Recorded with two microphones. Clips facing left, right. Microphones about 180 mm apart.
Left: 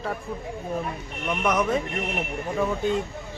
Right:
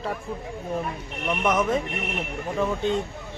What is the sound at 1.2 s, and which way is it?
A man's voice, centre (ahead or behind).